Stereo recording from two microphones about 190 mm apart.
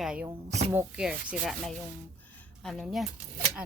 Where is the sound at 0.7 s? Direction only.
10° right (ahead or behind).